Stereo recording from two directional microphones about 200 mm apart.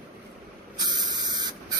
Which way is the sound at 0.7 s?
20° right (ahead or behind).